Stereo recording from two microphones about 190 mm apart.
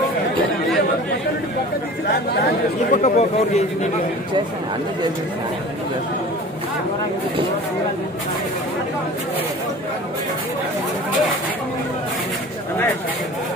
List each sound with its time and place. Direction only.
2.9 s a man's voice: 35° left (ahead or behind)